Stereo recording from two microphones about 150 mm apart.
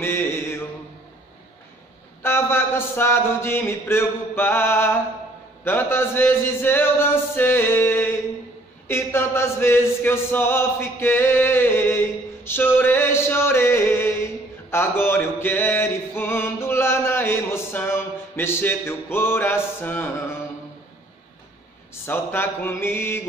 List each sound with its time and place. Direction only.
0.0 s mantra: 15° left (ahead or behind)
2.2 s a man's voice: 15° left (ahead or behind)
5.6 s chant: 15° left (ahead or behind)
14.7 s mantra: 15° left (ahead or behind)
22.0 s chant: 15° left (ahead or behind)